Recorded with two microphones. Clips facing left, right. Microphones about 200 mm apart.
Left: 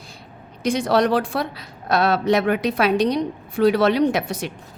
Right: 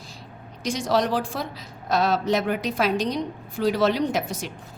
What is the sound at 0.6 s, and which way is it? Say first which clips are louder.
A woman's voice: left 5 dB; 60° left (ahead or behind).